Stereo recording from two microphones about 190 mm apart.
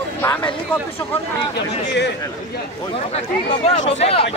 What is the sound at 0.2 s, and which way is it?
Speech, 10° left (ahead or behind).